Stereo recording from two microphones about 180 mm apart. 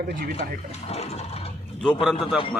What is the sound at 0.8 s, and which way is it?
Toilet flush, 35° left (ahead or behind).